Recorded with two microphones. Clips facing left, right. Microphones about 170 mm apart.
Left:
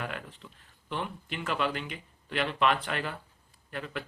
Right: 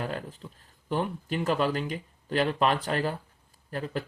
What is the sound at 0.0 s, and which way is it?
Speech, 35° right (ahead or behind).